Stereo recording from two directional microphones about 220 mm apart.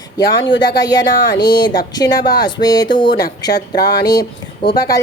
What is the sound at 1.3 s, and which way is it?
A woman's voice, 20° left (ahead or behind).